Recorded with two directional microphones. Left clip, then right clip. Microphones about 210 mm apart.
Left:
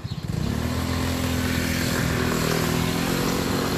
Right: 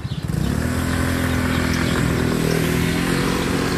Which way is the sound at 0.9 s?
20° left (ahead or behind).